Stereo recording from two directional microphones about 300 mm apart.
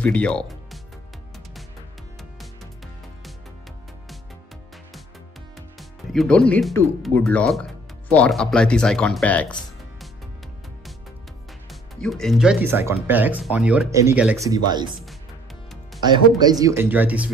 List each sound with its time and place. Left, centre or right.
0.0 s speech: centre
5.8 s music: centre
6.5 s speech: centre
11.7 s speech: centre
16.0 s speech: centre